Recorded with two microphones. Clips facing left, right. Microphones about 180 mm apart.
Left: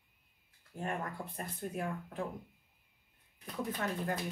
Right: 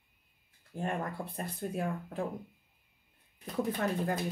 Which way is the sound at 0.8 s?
30° right (ahead or behind).